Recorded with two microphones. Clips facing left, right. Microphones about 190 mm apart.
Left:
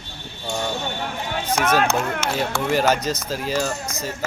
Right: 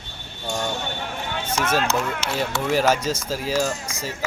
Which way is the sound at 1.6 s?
55° left (ahead or behind).